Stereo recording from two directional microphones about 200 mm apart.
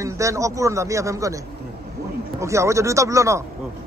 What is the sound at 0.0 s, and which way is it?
Speech, 15° right (ahead or behind).